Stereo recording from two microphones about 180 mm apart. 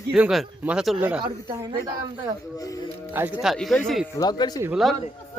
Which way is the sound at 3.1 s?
10° right (ahead or behind).